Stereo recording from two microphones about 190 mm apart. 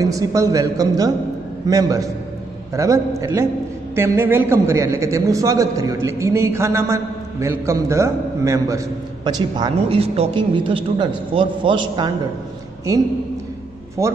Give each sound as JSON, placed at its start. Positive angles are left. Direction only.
{"t": 0.0, "sound": "a man's voice", "side_deg": -15}
{"t": 14.0, "sound": "a man's voice", "side_deg": -15}